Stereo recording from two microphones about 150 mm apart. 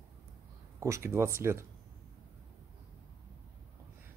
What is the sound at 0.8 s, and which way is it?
Speech, 20° right (ahead or behind).